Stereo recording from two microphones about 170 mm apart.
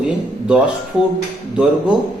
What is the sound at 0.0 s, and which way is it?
Speech, 5° right (ahead or behind).